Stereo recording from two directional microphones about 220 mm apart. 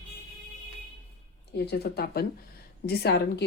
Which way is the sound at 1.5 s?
50° left (ahead or behind).